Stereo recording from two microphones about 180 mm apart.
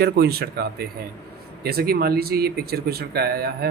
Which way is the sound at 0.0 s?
60° right (ahead or behind).